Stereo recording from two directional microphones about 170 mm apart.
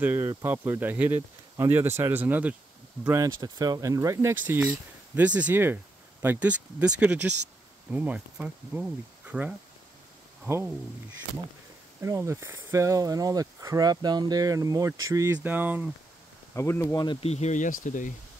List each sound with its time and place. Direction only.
0.0 s speech: 15° right (ahead or behind)
12.0 s speech: 15° right (ahead or behind)
16.5 s speech: 15° left (ahead or behind)
17.2 s speech: 40° left (ahead or behind)